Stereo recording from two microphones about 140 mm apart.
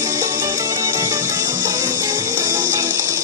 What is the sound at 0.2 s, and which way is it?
Music, 20° right (ahead or behind).